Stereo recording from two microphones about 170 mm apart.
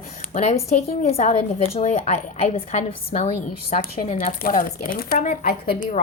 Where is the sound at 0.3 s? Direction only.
40° left (ahead or behind); by 5.7 s 60° left (ahead or behind).